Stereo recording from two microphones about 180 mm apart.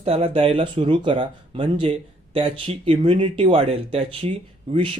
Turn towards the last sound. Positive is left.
turn(degrees=-30)  # may be behind; listen again after turning